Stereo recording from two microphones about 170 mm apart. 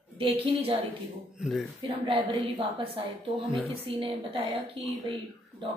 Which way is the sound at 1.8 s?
35° right (ahead or behind).